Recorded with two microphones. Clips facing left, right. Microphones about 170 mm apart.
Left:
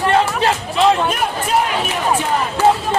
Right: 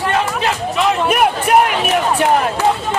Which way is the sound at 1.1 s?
65° right (ahead or behind).